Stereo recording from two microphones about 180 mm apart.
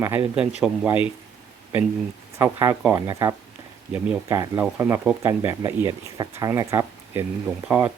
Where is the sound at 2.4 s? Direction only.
15° right (ahead or behind).